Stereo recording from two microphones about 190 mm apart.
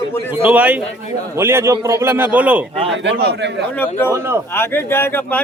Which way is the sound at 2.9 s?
65° right (ahead or behind).